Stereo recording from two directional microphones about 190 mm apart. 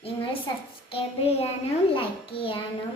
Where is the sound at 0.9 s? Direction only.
30° left (ahead or behind).